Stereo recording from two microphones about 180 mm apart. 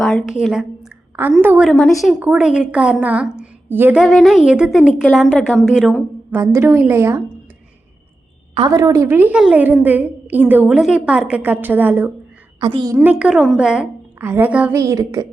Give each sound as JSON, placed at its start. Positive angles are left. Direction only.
{"t": 0.0, "sound": "a sound", "side_deg": 0}
{"t": 1.4, "sound": "a woman's voice", "side_deg": -5}
{"t": 4.0, "sound": "a woman's voice", "side_deg": 0}
{"t": 6.4, "sound": "a woman's voice", "side_deg": -15}
{"t": 8.5, "sound": "a woman's voice", "side_deg": -25}
{"t": 12.5, "sound": "a woman's voice", "side_deg": -25}
{"t": 13.0, "sound": "a woman's voice", "side_deg": -10}